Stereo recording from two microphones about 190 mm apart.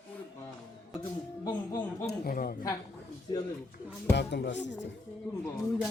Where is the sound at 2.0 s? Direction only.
50° left (ahead or behind).